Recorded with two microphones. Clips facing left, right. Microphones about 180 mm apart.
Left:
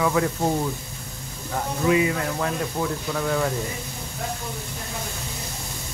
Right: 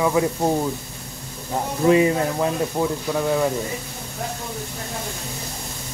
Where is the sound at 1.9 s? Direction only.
35° right (ahead or behind); by 3.4 s 15° right (ahead or behind).